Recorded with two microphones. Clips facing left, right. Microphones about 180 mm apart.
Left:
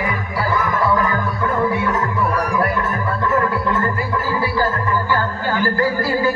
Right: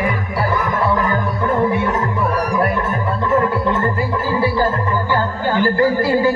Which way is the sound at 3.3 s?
25° right (ahead or behind).